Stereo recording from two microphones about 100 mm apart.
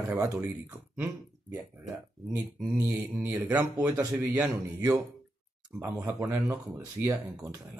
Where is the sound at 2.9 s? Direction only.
20° right (ahead or behind).